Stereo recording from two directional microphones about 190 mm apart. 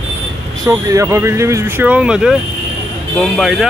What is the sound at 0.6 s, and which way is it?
Speech, 15° right (ahead or behind).